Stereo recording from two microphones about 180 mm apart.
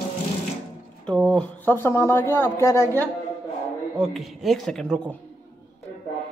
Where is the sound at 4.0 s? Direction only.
Centre (ahead or behind).